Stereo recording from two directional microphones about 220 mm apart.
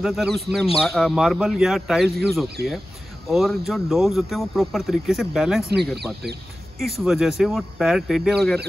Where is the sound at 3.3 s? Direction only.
Centre (ahead or behind).